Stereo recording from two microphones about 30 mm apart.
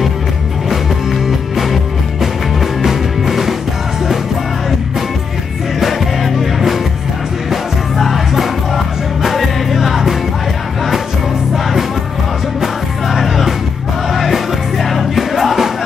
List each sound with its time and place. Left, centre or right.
1.2 s music: centre
5.8 s music: centre
8.0 s music: centre
13.1 s music: centre